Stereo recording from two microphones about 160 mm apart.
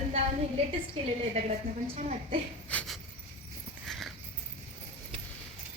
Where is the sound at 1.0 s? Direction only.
40° right (ahead or behind).